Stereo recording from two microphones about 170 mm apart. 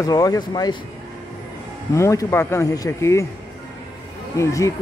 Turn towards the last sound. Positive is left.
turn(degrees=20)  # may be behind; listen again after turning